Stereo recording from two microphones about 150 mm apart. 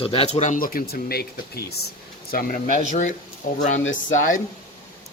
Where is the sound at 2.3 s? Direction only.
70° left (ahead or behind).